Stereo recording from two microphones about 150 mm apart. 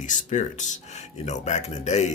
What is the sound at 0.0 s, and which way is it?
Speech, 55° left (ahead or behind).